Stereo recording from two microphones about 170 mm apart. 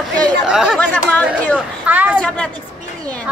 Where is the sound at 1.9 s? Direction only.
10° right (ahead or behind).